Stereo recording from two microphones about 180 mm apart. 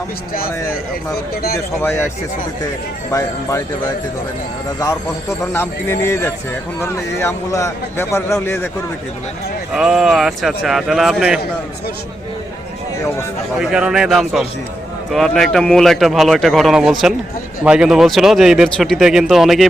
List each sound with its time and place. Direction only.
1.5 s a man's voice: 15° left (ahead or behind)
3.1 s a man's voice: 15° left (ahead or behind)
5.5 s a man's voice: 15° left (ahead or behind)
9.7 s speech: 5° right (ahead or behind)
13.6 s speech: 5° right (ahead or behind)